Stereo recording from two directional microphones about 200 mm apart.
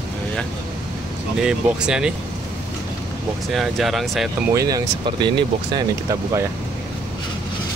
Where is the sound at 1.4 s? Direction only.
5° right (ahead or behind).